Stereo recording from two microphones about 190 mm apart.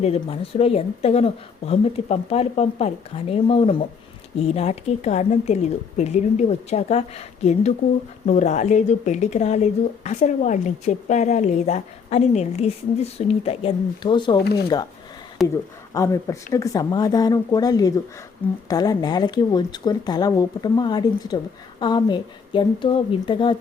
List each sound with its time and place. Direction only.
0.0 s speech: 30° left (ahead or behind)
8.3 s speech: 40° left (ahead or behind)
14.3 s speech: 55° left (ahead or behind)
15.4 s speech: centre (ahead or behind)
15.9 s speech: 20° left (ahead or behind)